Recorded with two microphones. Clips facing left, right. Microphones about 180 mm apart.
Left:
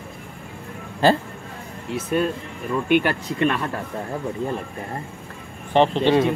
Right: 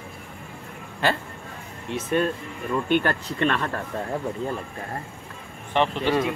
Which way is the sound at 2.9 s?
10° left (ahead or behind).